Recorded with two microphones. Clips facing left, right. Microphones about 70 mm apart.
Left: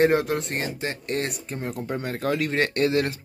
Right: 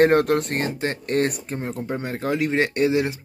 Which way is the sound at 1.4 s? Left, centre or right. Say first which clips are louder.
Right 2 dB; right.